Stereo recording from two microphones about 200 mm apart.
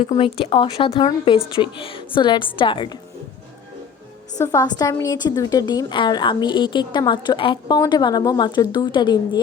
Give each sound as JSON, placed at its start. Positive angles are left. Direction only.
{"t": 0.1, "sound": "a woman's voice", "side_deg": 25}
{"t": 4.5, "sound": "a woman's voice", "side_deg": 20}